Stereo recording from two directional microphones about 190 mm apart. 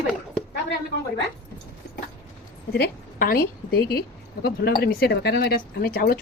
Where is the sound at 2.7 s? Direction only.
50° left (ahead or behind).